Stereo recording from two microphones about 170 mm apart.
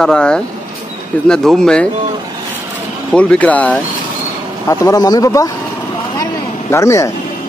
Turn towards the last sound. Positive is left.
turn(degrees=15)  # may be behind; listen again after turning